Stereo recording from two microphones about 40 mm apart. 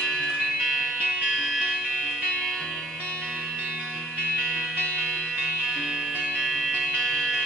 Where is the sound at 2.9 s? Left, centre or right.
Left.